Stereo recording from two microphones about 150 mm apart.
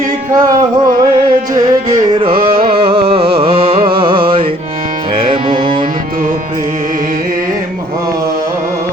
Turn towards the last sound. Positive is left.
turn(degrees=-65)  # may be behind; listen again after turning